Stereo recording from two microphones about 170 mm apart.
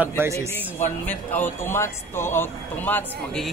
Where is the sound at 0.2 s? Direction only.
15° right (ahead or behind).